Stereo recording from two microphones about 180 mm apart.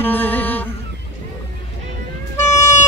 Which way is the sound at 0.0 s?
10° left (ahead or behind).